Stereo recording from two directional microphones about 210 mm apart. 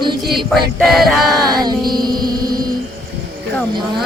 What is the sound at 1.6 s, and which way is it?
Music, 20° right (ahead or behind).